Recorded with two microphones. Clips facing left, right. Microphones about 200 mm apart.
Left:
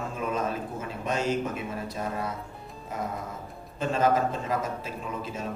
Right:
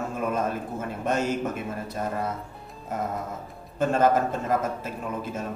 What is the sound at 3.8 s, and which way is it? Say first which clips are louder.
A man's voice: right 3 dB; 50° right (ahead or behind).